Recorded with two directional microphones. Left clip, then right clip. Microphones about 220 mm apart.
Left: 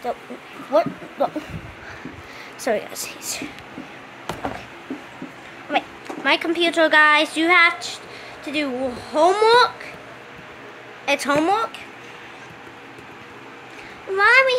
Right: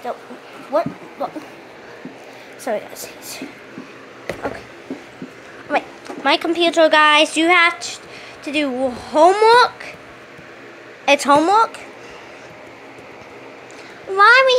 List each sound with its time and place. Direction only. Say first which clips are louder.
0.7 s speech: left 1 dB; 15° left (ahead or behind)
1.2 s a sound: left 4 dB; 30° left (ahead or behind)
2.6 s speech: left 1 dB; 25° left (ahead or behind)
5.7 s a woman's voice: right 2 dB; 10° right (ahead or behind)
11.1 s a child's voice: right 6 dB; 10° right (ahead or behind)
14.1 s a child's voice: right 4 dB; 10° right (ahead or behind)